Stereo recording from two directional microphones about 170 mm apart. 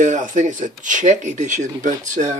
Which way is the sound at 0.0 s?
45° right (ahead or behind).